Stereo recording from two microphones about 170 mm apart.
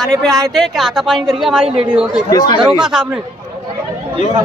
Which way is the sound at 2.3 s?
20° left (ahead or behind).